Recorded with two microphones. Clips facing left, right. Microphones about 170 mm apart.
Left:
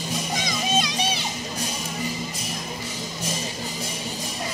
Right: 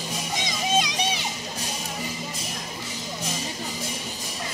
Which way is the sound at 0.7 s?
15° right (ahead or behind).